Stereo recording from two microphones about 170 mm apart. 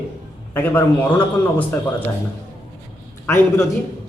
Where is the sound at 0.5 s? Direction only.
10° left (ahead or behind).